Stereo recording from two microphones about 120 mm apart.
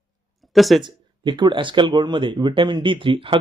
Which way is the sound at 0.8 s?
40° right (ahead or behind).